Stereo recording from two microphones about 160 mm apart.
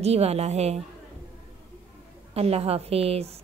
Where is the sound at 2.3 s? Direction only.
40° right (ahead or behind).